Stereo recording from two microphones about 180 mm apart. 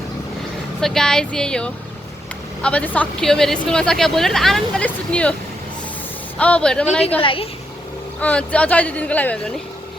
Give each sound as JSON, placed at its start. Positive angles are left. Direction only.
{"t": 0.8, "sound": "speech", "side_deg": 0}
{"t": 6.4, "sound": "speech", "side_deg": 5}
{"t": 7.2, "sound": "a woman's voice", "side_deg": 30}
{"t": 8.2, "sound": "speech", "side_deg": 5}